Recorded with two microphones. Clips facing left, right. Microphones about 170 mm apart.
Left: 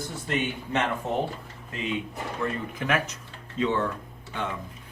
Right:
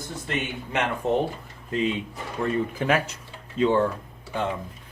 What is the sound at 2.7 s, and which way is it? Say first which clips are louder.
Speech: right 4 dB; 30° right (ahead or behind).